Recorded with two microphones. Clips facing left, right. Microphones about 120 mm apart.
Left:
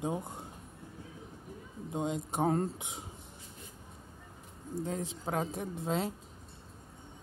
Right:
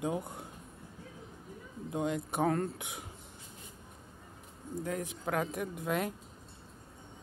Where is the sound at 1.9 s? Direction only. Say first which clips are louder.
Right 1 dB; 20° left (ahead or behind).